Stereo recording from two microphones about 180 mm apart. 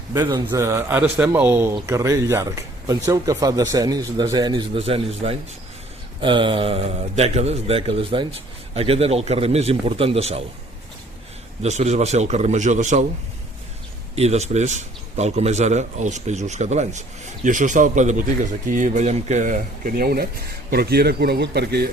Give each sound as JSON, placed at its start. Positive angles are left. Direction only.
{"t": 0.1, "sound": "a man's voice", "side_deg": -20}
{"t": 11.6, "sound": "speech", "side_deg": -40}
{"t": 14.2, "sound": "speech", "side_deg": -35}